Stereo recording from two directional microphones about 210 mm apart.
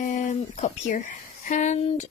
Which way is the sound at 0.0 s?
40° left (ahead or behind).